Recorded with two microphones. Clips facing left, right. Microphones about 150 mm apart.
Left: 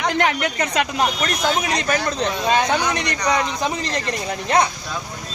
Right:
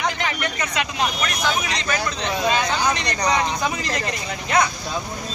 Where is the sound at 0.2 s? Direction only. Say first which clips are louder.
Left 6 dB; 65° left (ahead or behind).